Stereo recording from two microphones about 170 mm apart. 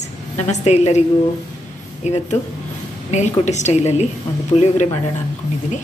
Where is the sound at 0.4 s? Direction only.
40° left (ahead or behind).